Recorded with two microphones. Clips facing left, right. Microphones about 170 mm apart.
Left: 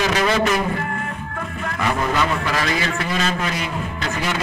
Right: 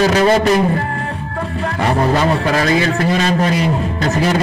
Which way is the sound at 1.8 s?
35° right (ahead or behind).